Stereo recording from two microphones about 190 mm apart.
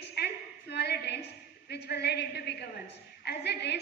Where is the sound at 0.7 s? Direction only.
60° left (ahead or behind).